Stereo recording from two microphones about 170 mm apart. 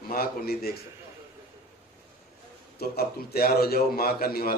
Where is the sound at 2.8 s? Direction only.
65° left (ahead or behind).